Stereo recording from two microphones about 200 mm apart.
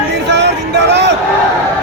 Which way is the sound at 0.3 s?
60° right (ahead or behind).